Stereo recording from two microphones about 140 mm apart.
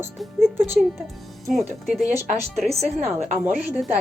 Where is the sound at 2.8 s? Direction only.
50° right (ahead or behind).